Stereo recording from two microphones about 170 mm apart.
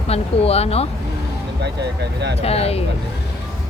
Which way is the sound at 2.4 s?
35° left (ahead or behind).